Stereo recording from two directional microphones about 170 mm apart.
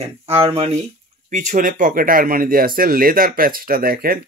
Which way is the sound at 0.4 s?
35° right (ahead or behind).